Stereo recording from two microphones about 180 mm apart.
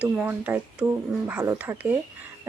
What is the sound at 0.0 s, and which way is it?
Speech, 10° right (ahead or behind).